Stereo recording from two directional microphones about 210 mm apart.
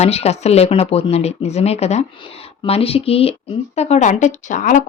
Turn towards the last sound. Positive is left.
turn(degrees=35)  # may be behind; listen again after turning